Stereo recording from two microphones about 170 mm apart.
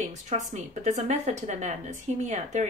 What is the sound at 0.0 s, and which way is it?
A woman's voice, 45° right (ahead or behind).